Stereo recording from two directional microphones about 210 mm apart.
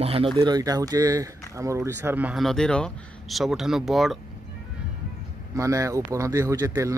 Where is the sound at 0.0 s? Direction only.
25° right (ahead or behind); by 4.2 s centre (ahead or behind).